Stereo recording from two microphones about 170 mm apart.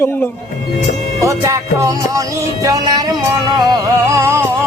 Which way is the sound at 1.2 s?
20° right (ahead or behind).